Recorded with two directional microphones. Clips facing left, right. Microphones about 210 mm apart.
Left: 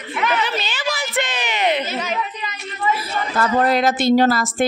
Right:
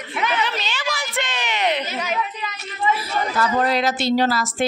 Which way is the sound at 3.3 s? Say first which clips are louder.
Left 3 dB; 50° left (ahead or behind).